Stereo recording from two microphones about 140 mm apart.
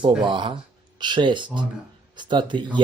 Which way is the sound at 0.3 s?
35° right (ahead or behind).